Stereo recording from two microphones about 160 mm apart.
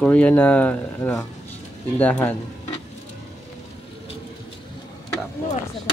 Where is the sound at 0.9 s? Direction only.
20° left (ahead or behind).